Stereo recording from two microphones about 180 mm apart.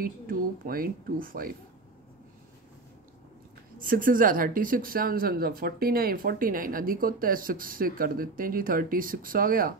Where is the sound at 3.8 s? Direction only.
50° right (ahead or behind).